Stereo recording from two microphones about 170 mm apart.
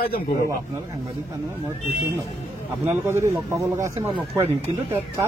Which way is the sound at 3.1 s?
15° right (ahead or behind).